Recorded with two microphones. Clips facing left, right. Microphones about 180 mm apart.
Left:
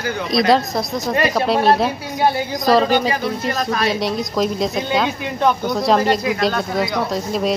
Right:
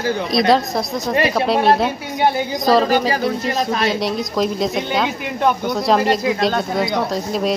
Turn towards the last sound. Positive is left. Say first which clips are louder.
# even
turn(degrees=0)  # may be behind; listen again after turning